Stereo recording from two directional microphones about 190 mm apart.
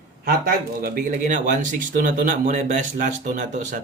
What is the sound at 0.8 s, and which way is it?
Speech, 50° right (ahead or behind).